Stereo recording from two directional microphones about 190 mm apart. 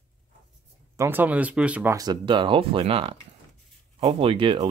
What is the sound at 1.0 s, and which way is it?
Speech, 10° right (ahead or behind).